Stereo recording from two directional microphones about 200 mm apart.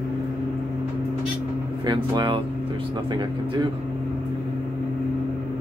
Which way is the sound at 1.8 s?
20° right (ahead or behind).